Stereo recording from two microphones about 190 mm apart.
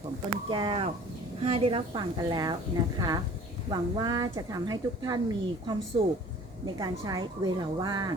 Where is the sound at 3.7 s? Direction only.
20° right (ahead or behind).